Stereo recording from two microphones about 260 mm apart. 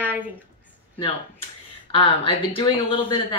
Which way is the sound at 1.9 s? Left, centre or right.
Left.